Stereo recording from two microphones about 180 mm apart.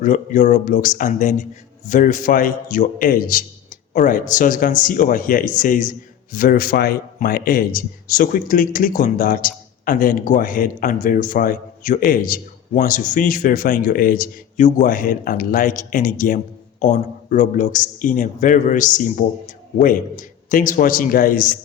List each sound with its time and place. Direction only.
0.0 s a man's voice: 45° left (ahead or behind)